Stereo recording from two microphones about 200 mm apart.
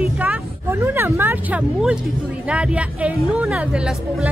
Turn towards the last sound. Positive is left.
turn(degrees=-5)  # may be behind; listen again after turning